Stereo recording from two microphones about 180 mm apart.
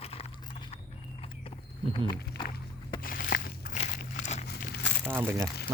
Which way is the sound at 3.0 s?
55° left (ahead or behind).